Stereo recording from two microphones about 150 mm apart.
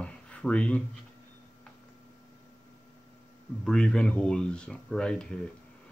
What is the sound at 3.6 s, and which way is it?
Speech, 5° left (ahead or behind).